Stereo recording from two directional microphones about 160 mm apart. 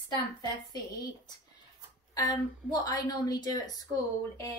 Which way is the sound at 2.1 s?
25° left (ahead or behind).